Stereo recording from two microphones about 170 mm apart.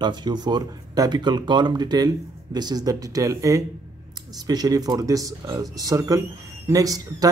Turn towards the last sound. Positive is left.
turn(degrees=-20)  # may be behind; listen again after turning